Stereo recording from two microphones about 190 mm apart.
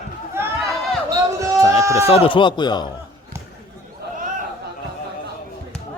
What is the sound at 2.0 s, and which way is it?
Speech, 30° left (ahead or behind).